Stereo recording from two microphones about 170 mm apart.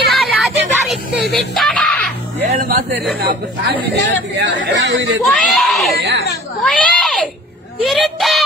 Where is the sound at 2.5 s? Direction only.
50° right (ahead or behind).